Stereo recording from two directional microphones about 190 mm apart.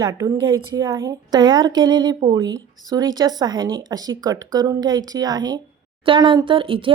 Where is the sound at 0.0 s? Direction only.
20° right (ahead or behind).